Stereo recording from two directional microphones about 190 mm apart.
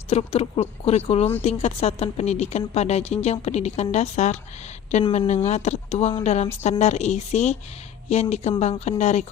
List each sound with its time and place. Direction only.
0.1 s speech: 30° left (ahead or behind)